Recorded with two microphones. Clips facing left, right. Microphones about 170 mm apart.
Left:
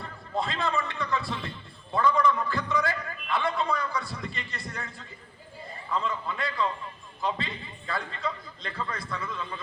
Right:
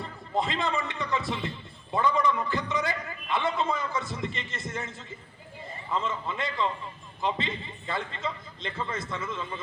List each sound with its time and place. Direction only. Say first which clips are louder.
0.0 s speech: right 2 dB; 20° right (ahead or behind)